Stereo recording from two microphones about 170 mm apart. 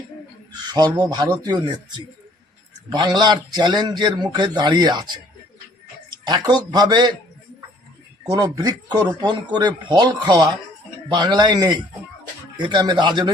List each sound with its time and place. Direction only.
0.9 s speech: 25° right (ahead or behind)
2.9 s speech: 25° right (ahead or behind)
6.2 s speech: 25° right (ahead or behind)
8.3 s speech: 25° right (ahead or behind)